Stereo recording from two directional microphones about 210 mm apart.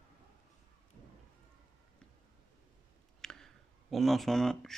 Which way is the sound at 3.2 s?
5° left (ahead or behind).